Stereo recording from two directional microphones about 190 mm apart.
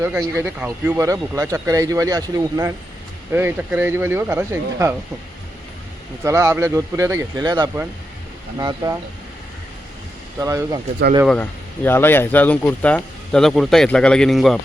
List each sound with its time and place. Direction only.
0.0 s speech: 15° right (ahead or behind)
6.2 s speech: 15° right (ahead or behind)
10.4 s speech: 15° right (ahead or behind)
11.3 s speech: 10° left (ahead or behind)